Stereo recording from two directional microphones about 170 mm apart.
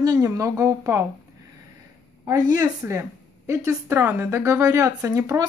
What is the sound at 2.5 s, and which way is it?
Speech, 20° right (ahead or behind).